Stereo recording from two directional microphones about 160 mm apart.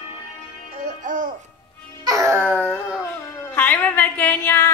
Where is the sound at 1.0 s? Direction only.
55° right (ahead or behind).